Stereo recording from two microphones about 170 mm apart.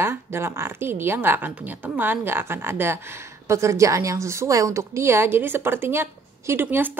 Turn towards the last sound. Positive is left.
turn(degrees=-10)  # may be behind; listen again after turning